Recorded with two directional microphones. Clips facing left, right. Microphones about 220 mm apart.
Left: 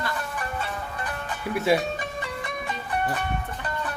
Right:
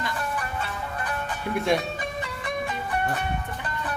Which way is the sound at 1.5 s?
5° left (ahead or behind).